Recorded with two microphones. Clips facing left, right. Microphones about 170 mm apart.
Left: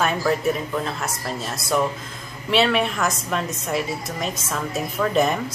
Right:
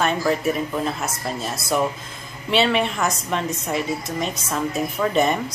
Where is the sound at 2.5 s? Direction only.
Centre (ahead or behind).